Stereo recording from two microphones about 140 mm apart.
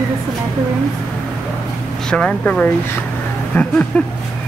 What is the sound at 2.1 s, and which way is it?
Speech, 5° left (ahead or behind).